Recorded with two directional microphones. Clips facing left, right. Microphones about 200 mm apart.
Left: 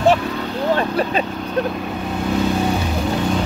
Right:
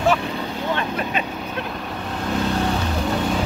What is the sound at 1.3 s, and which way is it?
Vehicle, 5° right (ahead or behind).